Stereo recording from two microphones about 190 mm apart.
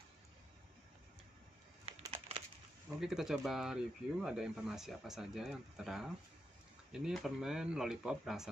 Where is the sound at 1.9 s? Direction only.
30° right (ahead or behind).